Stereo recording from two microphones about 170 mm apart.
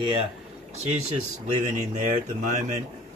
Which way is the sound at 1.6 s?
45° right (ahead or behind).